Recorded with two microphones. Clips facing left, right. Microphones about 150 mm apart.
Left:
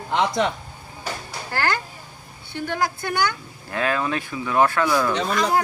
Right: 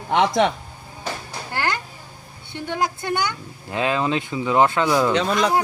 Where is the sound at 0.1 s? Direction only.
80° right.